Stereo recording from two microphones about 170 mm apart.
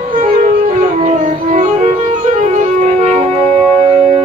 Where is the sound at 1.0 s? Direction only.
45° right (ahead or behind).